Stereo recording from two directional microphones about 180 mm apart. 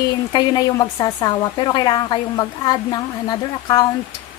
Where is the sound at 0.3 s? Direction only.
25° left (ahead or behind).